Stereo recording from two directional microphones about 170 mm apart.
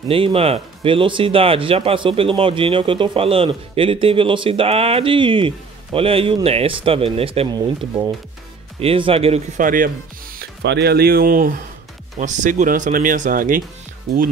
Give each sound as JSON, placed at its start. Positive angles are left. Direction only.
{"t": 0.1, "sound": "speech", "side_deg": -35}
{"t": 8.7, "sound": "speech", "side_deg": -35}
{"t": 9.6, "sound": "speech", "side_deg": -55}
{"t": 10.3, "sound": "speech", "side_deg": -80}